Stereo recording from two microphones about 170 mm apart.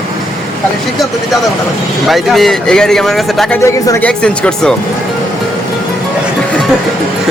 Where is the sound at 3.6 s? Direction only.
15° left (ahead or behind).